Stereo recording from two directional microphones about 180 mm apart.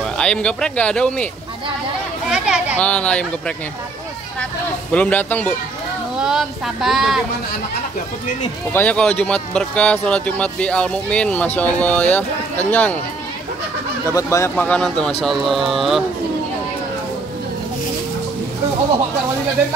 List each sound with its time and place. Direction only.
0.0 s speech: 5° left (ahead or behind)
2.2 s a sound: 5° right (ahead or behind)
2.8 s speech: 5° left (ahead or behind)
4.9 s speech: 10° left (ahead or behind)
6.1 s speech: 5° right (ahead or behind)
8.7 s speech: 5° left (ahead or behind)
14.0 s speech: 15° left (ahead or behind)
14.5 s speech: 5° left (ahead or behind)